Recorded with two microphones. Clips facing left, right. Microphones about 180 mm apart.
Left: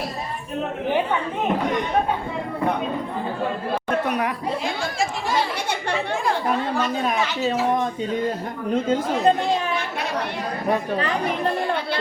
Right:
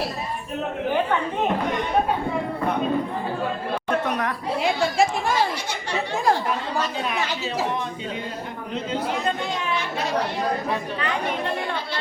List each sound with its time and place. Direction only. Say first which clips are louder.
4.0 s a sound: left 2 dB; 10° left (ahead or behind)
7.1 s speech: left 4 dB; 45° left (ahead or behind)
10.7 s speech: left 4 dB; 35° left (ahead or behind)